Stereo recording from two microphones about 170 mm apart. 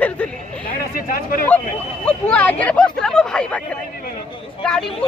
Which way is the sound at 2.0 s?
10° left (ahead or behind).